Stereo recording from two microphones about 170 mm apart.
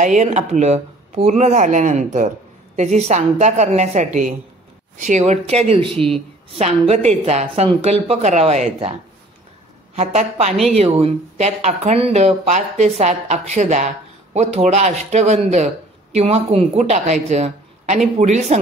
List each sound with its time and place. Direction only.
0.0 s a man's voice: 45° right (ahead or behind)
9.9 s a man's voice: 40° right (ahead or behind)